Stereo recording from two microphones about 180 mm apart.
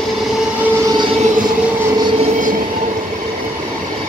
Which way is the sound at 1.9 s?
30° right (ahead or behind).